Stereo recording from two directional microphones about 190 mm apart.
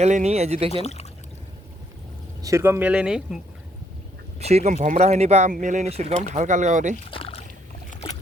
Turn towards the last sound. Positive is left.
turn(degrees=30)  # may be behind; listen again after turning